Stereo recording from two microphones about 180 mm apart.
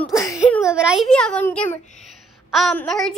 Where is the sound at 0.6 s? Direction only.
5° right (ahead or behind).